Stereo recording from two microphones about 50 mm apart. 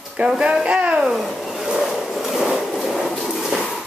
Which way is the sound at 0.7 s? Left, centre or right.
Centre.